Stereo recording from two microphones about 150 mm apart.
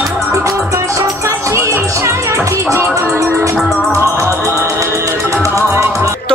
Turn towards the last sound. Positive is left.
turn(degrees=-20)  # may be behind; listen again after turning